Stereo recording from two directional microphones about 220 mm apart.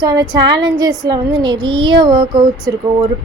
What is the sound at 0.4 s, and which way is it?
Speech, 20° right (ahead or behind).